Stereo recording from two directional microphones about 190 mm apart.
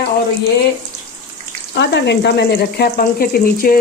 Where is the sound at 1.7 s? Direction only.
65° left (ahead or behind).